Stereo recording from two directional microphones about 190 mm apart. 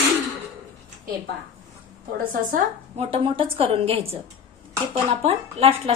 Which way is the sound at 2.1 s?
50° right (ahead or behind).